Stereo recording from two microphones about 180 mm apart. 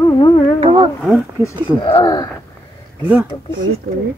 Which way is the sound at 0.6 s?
30° right (ahead or behind).